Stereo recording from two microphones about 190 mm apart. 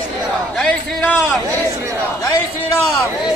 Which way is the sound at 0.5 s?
5° left (ahead or behind).